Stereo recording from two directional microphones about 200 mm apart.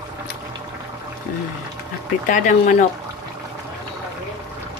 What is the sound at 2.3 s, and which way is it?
Speech, 40° left (ahead or behind).